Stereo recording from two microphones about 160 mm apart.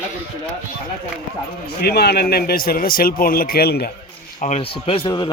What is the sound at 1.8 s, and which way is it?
A man's voice, 90° left.